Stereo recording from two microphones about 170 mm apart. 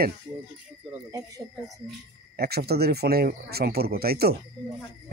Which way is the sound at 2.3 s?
65° right (ahead or behind).